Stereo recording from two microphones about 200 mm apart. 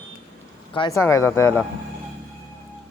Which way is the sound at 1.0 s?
15° left (ahead or behind).